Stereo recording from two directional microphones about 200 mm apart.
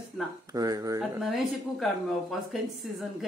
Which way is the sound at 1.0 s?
Centre (ahead or behind).